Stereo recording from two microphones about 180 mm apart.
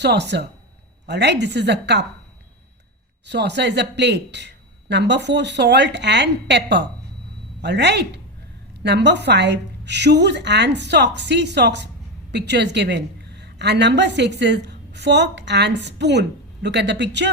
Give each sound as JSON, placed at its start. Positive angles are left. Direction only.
{"t": 0.0, "sound": "speech", "side_deg": -70}
{"t": 3.2, "sound": "a woman's voice", "side_deg": -70}